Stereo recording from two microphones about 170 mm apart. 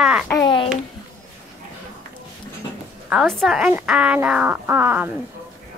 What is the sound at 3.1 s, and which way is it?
Speech, centre (ahead or behind).